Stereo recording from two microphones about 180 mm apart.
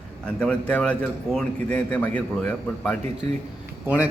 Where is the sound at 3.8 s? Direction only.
10° right (ahead or behind).